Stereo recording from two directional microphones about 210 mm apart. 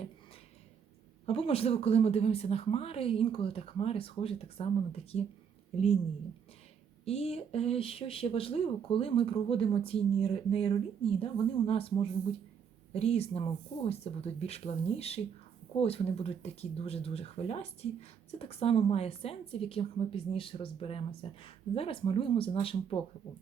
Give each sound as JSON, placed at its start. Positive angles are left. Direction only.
{"t": 1.3, "sound": "speech", "side_deg": 30}
{"t": 7.0, "sound": "speech", "side_deg": 30}